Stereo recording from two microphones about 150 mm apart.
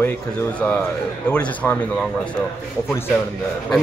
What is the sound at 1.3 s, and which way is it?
Speech, 10° left (ahead or behind).